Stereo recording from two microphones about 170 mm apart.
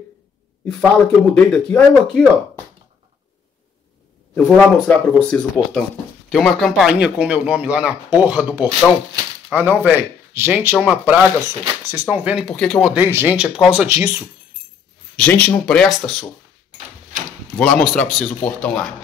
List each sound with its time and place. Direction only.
0.7 s speech: 5° left (ahead or behind)
4.6 s speech: 5° left (ahead or behind)
12.9 s speech: 10° right (ahead or behind)
15.1 s speech: 10° left (ahead or behind)
17.6 s speech: 5° left (ahead or behind)